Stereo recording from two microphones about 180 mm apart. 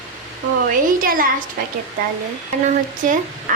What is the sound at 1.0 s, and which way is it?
Speech, 50° right (ahead or behind).